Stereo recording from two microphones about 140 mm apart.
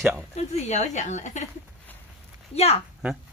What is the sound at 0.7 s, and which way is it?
Speech, 55° left (ahead or behind).